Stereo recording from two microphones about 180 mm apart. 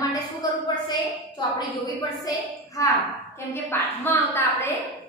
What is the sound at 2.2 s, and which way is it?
A woman's voice, 20° left (ahead or behind).